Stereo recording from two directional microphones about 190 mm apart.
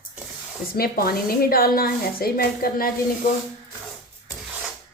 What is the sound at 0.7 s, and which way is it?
A woman's voice, 50° left (ahead or behind).